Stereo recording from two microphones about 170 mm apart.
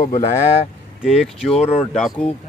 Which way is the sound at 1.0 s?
Centre (ahead or behind).